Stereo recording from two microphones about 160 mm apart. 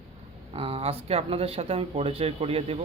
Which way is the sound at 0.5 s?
35° right (ahead or behind).